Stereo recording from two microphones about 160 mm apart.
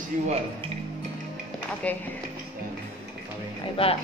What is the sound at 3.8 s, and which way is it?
Speech, 35° left (ahead or behind).